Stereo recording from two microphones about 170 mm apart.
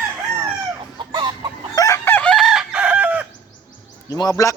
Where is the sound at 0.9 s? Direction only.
25° right (ahead or behind).